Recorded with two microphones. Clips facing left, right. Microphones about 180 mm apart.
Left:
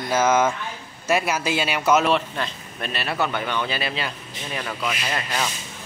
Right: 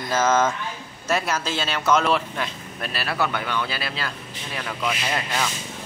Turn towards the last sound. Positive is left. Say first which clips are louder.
# right 1 dB
turn(degrees=0)  # may be behind; listen again after turning